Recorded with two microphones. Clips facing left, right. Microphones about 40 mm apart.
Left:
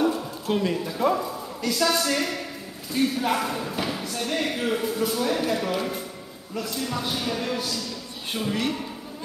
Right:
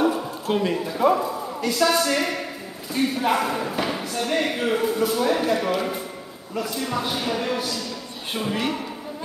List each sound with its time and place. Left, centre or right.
0.0 s a man's voice: centre